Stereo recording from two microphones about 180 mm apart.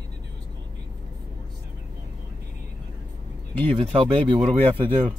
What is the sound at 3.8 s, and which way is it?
Speech, 30° right (ahead or behind).